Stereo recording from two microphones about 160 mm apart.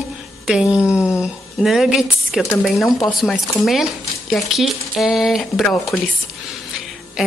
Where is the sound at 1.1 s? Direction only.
5° right (ahead or behind).